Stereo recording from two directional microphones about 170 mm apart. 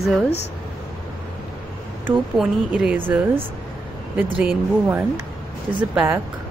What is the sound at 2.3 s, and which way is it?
Speech, 5° right (ahead or behind).